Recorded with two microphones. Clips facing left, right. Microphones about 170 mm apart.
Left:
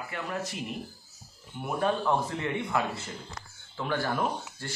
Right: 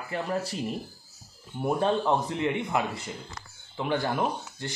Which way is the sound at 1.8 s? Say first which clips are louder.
Even; 25° right (ahead or behind).